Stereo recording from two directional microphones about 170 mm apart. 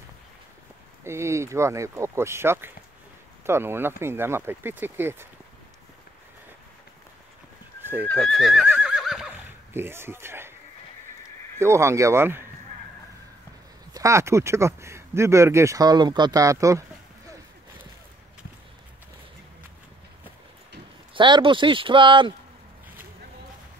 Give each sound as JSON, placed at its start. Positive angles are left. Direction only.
{"t": 1.0, "sound": "speech", "side_deg": -15}
{"t": 7.8, "sound": "neigh", "side_deg": -10}
{"t": 8.1, "sound": "neigh", "side_deg": 5}
{"t": 9.8, "sound": "speech", "side_deg": -15}
{"t": 11.6, "sound": "speech", "side_deg": -15}
{"t": 13.9, "sound": "speech", "side_deg": -15}
{"t": 21.1, "sound": "speech", "side_deg": -30}